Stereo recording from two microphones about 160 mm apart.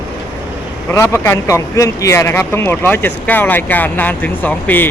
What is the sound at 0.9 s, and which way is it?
Speech, 15° left (ahead or behind).